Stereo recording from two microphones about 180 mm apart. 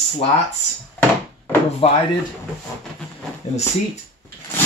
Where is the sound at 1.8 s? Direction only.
30° left (ahead or behind).